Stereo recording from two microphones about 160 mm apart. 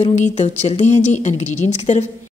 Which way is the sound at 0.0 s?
45° left (ahead or behind).